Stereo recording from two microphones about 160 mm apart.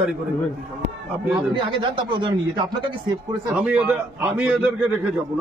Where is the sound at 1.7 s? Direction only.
30° right (ahead or behind).